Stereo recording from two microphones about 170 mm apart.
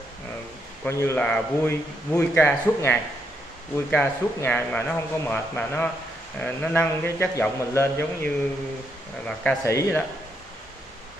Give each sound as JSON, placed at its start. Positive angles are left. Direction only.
{"t": 0.8, "sound": "a man's voice", "side_deg": 15}
{"t": 9.2, "sound": "speech", "side_deg": 5}
{"t": 9.7, "sound": "a man's voice", "side_deg": 15}